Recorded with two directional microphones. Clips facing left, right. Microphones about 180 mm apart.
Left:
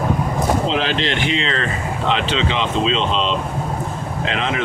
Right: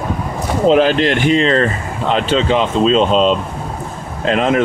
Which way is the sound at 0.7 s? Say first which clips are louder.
Right 9 dB; 50° right (ahead or behind).